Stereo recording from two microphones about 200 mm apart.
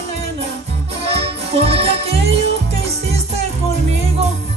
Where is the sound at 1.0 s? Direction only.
30° right (ahead or behind).